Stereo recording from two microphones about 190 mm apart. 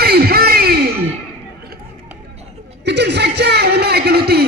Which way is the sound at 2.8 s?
65° right (ahead or behind).